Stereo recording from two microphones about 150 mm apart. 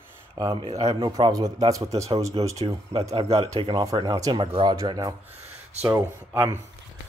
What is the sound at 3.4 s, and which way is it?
Speech, 30° right (ahead or behind).